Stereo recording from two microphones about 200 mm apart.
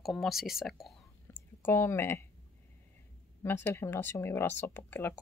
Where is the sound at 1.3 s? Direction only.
15° left (ahead or behind).